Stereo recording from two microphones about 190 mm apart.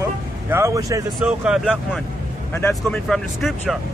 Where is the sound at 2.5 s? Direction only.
15° left (ahead or behind).